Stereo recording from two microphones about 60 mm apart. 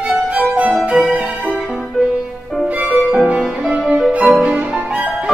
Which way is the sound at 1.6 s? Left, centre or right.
Centre.